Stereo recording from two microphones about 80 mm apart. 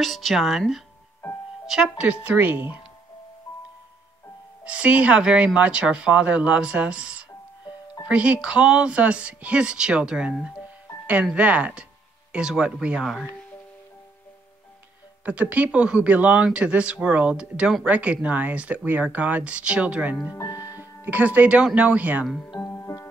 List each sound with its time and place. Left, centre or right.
0.0 s speech: centre
2.2 s speech: right
4.6 s speech: centre
7.6 s music: left
8.1 s speech: centre
15.2 s speech: centre
22.7 s music: left